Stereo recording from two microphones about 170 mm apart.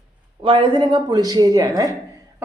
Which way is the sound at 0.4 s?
30° right (ahead or behind).